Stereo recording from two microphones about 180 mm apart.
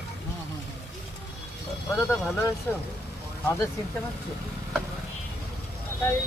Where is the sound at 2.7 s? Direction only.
10° left (ahead or behind).